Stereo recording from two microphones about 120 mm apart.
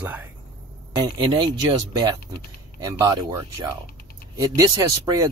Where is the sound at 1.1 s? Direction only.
40° right (ahead or behind).